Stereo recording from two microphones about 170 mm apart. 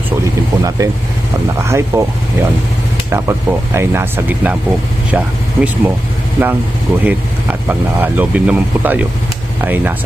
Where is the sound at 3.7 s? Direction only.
15° right (ahead or behind).